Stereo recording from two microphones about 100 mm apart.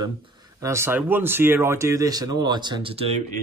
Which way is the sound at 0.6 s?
25° right (ahead or behind).